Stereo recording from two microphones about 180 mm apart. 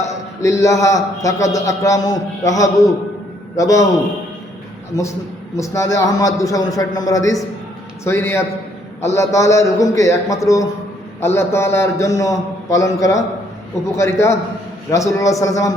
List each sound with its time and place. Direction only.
0.4 s a man's voice: 15° left (ahead or behind)
4.9 s a man's voice: 20° left (ahead or behind)